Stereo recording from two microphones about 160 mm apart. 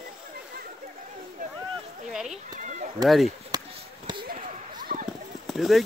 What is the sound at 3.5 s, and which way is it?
Basketball bounce, 25° right (ahead or behind).